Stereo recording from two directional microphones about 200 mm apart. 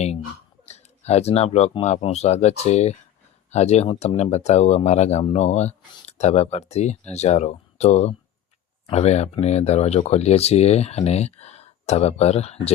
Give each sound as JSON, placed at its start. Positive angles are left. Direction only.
{"t": 0.6, "sound": "speech", "side_deg": 35}